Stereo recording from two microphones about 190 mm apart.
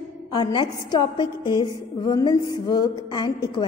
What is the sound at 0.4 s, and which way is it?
A woman's voice, 25° left (ahead or behind).